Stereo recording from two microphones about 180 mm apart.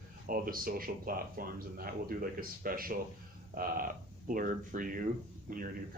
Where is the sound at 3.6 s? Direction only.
55° right (ahead or behind).